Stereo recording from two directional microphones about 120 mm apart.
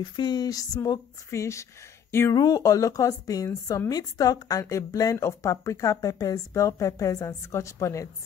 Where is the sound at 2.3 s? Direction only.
35° left (ahead or behind).